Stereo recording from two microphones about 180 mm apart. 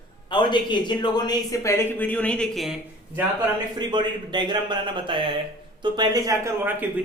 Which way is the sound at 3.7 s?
25° right (ahead or behind).